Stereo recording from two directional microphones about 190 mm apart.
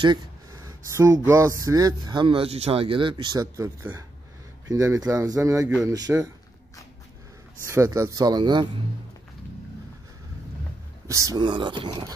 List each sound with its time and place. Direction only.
0.0 s a sound: 20° right (ahead or behind)
1.2 s speech: 15° right (ahead or behind)
7.6 s speech: 15° right (ahead or behind)
11.1 s speech: 15° right (ahead or behind)